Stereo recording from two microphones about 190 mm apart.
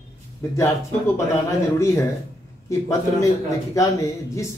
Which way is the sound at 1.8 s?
15° left (ahead or behind).